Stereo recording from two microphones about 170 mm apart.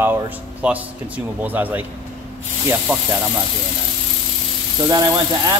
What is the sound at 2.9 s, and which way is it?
Speech, 5° right (ahead or behind).